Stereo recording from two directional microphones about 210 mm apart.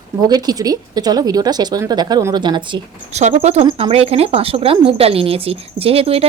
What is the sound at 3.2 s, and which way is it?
Speech, 35° right (ahead or behind).